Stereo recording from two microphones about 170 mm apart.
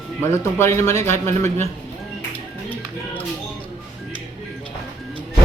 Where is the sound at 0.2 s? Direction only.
15° left (ahead or behind).